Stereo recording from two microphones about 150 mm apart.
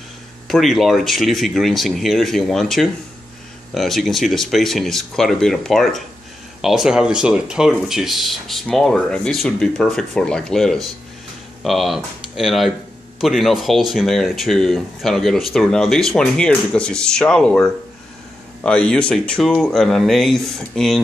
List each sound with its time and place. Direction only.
0.5 s speech: centre (ahead or behind)